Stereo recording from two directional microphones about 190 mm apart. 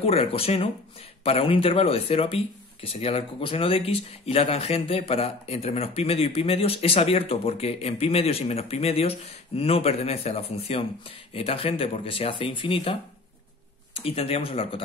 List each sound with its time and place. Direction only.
0.0 s speech: 30° left (ahead or behind)
13.9 s speech: 30° left (ahead or behind)